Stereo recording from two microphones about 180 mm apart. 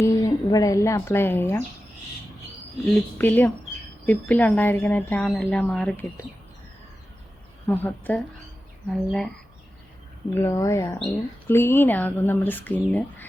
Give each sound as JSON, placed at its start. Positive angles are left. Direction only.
{"t": 0.0, "sound": "speech", "side_deg": 20}
{"t": 2.8, "sound": "speech", "side_deg": 5}
{"t": 7.7, "sound": "speech", "side_deg": 10}
{"t": 10.5, "sound": "speech", "side_deg": 15}